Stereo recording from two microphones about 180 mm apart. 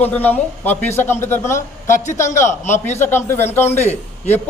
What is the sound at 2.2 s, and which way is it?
Speech, 40° left (ahead or behind).